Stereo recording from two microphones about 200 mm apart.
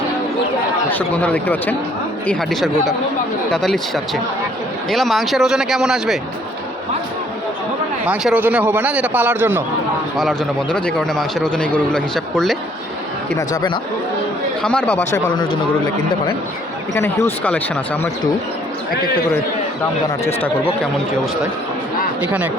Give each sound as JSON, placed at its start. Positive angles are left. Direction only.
{"t": 0.9, "sound": "a man's voice", "side_deg": 10}
{"t": 8.0, "sound": "a man's voice", "side_deg": -5}
{"t": 10.2, "sound": "a man's voice", "side_deg": 0}
{"t": 13.5, "sound": "speech", "side_deg": 20}
{"t": 14.6, "sound": "a man's voice", "side_deg": 5}
{"t": 16.9, "sound": "speech", "side_deg": 15}